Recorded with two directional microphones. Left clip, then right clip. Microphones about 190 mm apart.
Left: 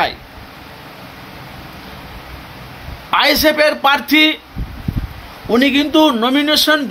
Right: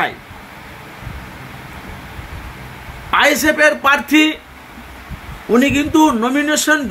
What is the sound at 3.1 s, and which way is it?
Speech, 20° left (ahead or behind).